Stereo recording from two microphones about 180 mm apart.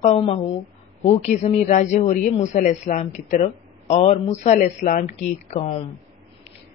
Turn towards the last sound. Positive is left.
turn(degrees=35)  # may be behind; listen again after turning